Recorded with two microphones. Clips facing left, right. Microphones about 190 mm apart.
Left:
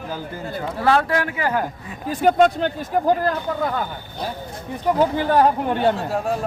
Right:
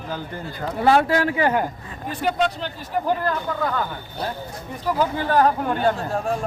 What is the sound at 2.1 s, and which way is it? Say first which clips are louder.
Speech: left 7 dB; 45° left (ahead or behind).